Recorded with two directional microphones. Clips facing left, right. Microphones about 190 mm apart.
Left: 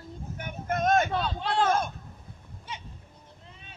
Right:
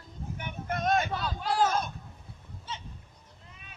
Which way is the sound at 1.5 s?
55° left (ahead or behind).